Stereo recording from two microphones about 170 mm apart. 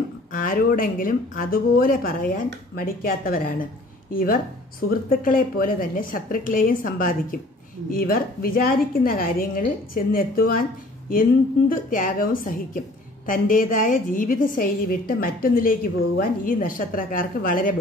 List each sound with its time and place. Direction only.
0.3 s a woman's voice: 55° left (ahead or behind)
11.7 s a woman's voice: 55° left (ahead or behind)